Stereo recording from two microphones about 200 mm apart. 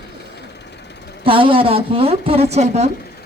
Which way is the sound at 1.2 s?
25° right (ahead or behind).